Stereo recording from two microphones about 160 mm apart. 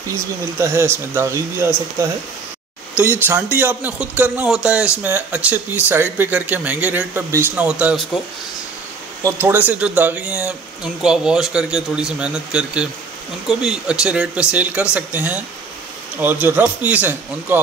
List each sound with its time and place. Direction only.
0.1 s speech: 15° right (ahead or behind)
3.0 s speech: 10° right (ahead or behind)
9.2 s speech: 10° right (ahead or behind)